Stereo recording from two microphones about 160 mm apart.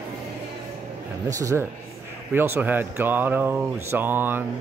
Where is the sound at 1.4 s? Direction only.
20° right (ahead or behind).